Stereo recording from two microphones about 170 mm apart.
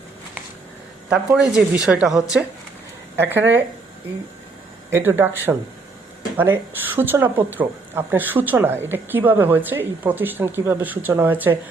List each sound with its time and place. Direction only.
1.1 s speech: 5° right (ahead or behind)
3.2 s speech: 10° right (ahead or behind)
4.9 s speech: 15° right (ahead or behind)